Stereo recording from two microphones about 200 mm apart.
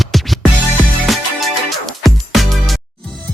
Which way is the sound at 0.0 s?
Centre (ahead or behind).